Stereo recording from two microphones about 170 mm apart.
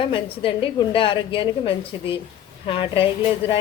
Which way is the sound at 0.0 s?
30° left (ahead or behind).